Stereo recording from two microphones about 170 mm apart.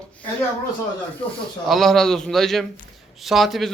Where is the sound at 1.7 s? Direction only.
Centre (ahead or behind).